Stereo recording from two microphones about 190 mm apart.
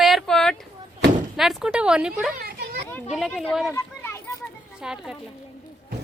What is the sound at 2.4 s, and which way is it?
Children playing, 55° right (ahead or behind).